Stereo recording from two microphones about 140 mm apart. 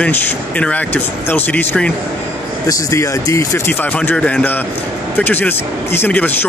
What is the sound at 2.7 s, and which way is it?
Speech, 25° left (ahead or behind).